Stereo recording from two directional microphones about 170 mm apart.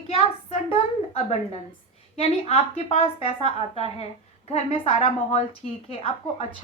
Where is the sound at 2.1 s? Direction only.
35° left (ahead or behind).